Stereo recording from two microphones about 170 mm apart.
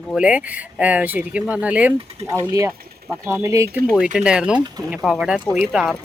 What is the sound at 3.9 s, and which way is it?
Speech, 5° right (ahead or behind).